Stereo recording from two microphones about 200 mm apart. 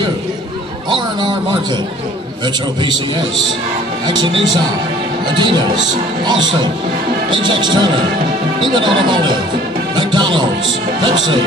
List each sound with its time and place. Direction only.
0.8 s speech: 25° right (ahead or behind)
4.1 s speech: 20° right (ahead or behind)